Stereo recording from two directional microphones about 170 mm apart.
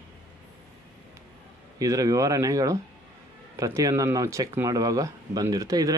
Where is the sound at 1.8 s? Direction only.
20° right (ahead or behind).